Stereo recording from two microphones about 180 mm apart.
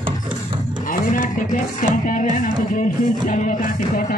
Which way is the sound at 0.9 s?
50° left (ahead or behind).